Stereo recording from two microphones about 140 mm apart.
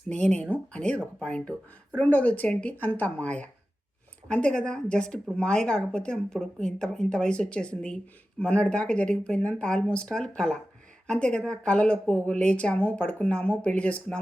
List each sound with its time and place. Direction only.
0.1 s a woman's voice: 5° left (ahead or behind)